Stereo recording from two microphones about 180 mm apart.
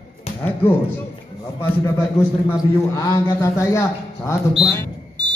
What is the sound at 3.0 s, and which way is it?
Speech, 20° left (ahead or behind).